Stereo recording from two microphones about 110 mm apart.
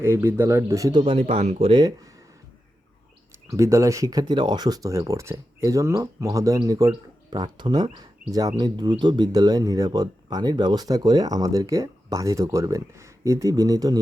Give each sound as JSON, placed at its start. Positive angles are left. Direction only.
{"t": 0.0, "sound": "speech", "side_deg": -20}
{"t": 0.9, "sound": "speech", "side_deg": -55}
{"t": 3.5, "sound": "speech", "side_deg": -30}
{"t": 8.5, "sound": "speech", "side_deg": -40}